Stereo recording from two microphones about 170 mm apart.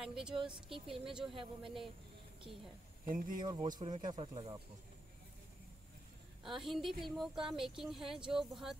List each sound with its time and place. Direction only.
0.0 s speech: 5° right (ahead or behind)
0.5 s speech: 30° right (ahead or behind)
0.9 s speech: centre (ahead or behind)
1.3 s speech: 30° right (ahead or behind)
3.1 s speech: 55° right (ahead or behind)
3.3 s speech: 25° right (ahead or behind)
6.4 s speech: centre (ahead or behind)